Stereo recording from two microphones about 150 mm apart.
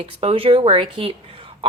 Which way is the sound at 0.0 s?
40° right (ahead or behind).